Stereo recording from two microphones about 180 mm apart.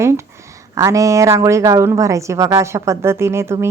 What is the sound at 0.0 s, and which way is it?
Speech, 15° right (ahead or behind).